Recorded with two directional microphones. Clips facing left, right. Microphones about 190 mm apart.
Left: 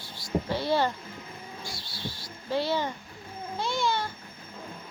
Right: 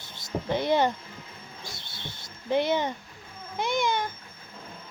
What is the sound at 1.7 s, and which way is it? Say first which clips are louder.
Bird: left 4 dB; 20° right (ahead or behind).